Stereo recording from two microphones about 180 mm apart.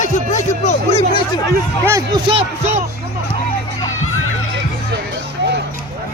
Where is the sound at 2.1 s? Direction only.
30° right (ahead or behind).